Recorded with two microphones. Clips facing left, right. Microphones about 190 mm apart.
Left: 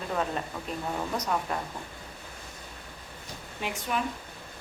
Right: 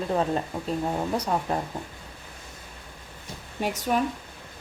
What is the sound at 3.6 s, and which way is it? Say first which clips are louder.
Speech: right 7 dB; 40° right (ahead or behind).